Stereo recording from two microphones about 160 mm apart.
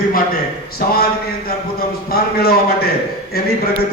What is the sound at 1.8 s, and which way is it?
A man's voice, 75° left (ahead or behind).